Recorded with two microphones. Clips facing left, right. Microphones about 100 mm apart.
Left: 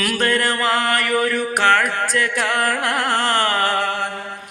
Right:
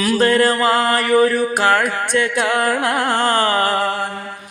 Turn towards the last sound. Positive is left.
turn(degrees=-30)  # may be behind; listen again after turning